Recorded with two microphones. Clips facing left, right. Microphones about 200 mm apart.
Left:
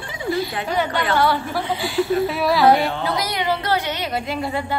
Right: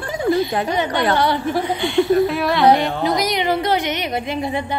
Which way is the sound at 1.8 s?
Centre (ahead or behind).